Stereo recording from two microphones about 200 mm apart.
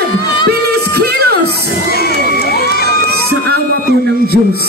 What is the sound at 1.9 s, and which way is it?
Crowd, 50° left (ahead or behind).